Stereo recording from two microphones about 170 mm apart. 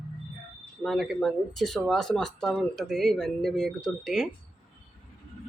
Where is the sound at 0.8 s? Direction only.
Centre (ahead or behind).